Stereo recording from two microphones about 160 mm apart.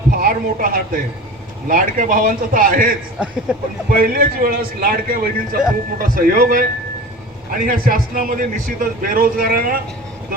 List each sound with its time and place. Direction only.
0.1 s a sound: 65° right (ahead or behind)
1.6 s a man's voice: 60° right (ahead or behind)
3.5 s speech: 5° right (ahead or behind)
3.8 s a man's voice: 65° right (ahead or behind)